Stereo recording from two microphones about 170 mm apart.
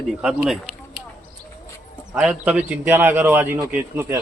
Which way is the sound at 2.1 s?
10° right (ahead or behind).